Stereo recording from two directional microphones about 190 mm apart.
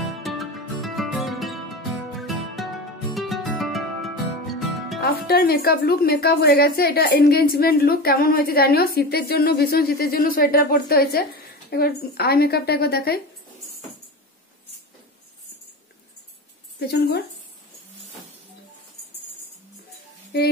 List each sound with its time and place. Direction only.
0.2 s music: centre (ahead or behind)
5.0 s a woman's voice: 55° left (ahead or behind)
16.8 s a woman's voice: 55° left (ahead or behind)